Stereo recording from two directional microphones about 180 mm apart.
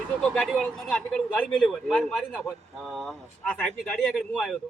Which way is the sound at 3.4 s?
5° left (ahead or behind).